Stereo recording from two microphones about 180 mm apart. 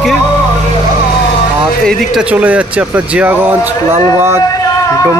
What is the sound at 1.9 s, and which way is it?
Speech, centre (ahead or behind).